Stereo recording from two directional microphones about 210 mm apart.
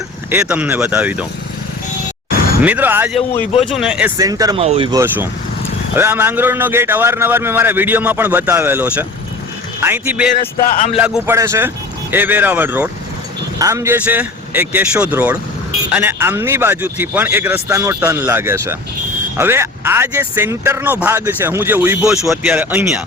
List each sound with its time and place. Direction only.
0.3 s a man's voice: 10° right (ahead or behind)
2.6 s a man's voice: 5° right (ahead or behind)
4.2 s a man's voice: 15° right (ahead or behind)
4.6 s speech: 25° right (ahead or behind)
4.9 s a man's voice: 10° right (ahead or behind)
10.6 s speech: 40° left (ahead or behind)
10.9 s a man's voice: 5° right (ahead or behind)